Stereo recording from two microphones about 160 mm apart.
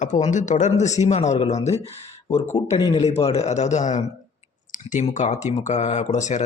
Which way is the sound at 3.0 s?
40° left (ahead or behind).